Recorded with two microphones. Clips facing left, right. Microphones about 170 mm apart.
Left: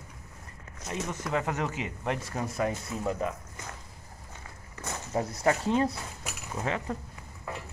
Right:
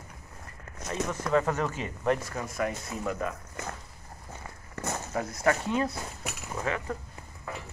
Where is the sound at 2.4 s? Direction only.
30° left (ahead or behind).